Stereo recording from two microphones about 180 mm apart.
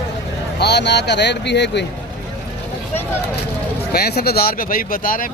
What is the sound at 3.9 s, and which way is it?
Speech, 60° left (ahead or behind).